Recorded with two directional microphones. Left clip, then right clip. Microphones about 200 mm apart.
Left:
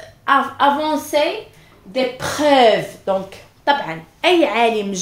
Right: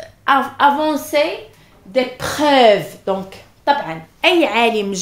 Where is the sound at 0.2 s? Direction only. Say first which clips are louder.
Right 1 dB; 45° right (ahead or behind).